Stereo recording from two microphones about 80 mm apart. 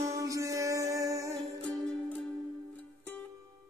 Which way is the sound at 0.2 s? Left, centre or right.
Right.